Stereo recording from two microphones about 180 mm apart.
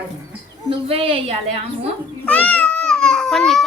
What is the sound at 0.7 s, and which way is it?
Speech, 30° right (ahead or behind).